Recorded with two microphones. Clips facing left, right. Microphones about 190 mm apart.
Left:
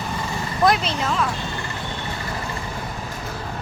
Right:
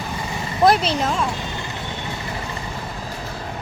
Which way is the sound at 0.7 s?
30° right (ahead or behind).